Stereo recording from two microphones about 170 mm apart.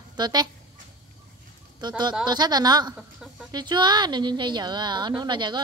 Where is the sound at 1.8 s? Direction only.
25° right (ahead or behind).